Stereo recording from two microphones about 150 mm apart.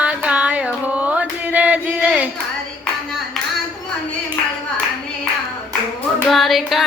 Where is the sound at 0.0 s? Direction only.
10° right (ahead or behind).